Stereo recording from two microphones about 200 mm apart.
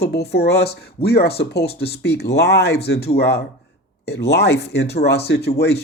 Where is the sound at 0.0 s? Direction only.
55° left (ahead or behind).